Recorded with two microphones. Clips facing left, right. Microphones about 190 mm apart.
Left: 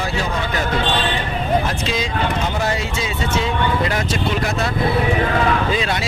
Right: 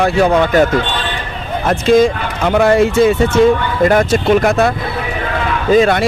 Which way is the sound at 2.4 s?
65° right (ahead or behind).